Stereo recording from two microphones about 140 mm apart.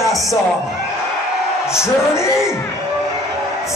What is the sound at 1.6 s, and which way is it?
Speech, 20° left (ahead or behind).